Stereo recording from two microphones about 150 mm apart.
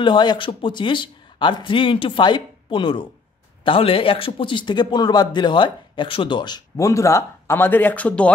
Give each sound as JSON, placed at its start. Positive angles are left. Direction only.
{"t": 0.0, "sound": "a man's voice", "side_deg": 30}